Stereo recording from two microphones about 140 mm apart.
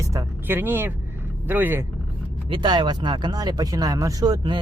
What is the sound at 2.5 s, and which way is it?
Speech, 35° right (ahead or behind).